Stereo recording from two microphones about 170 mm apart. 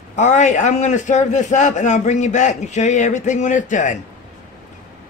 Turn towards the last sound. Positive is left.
turn(degrees=50)  # may be behind; listen again after turning